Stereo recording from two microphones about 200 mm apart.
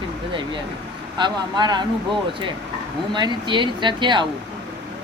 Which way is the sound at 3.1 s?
25° right (ahead or behind).